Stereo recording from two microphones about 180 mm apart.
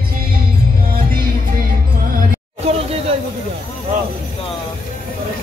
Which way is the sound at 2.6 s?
35° right (ahead or behind).